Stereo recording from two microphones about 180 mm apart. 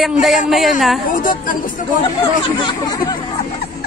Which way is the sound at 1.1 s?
50° left (ahead or behind).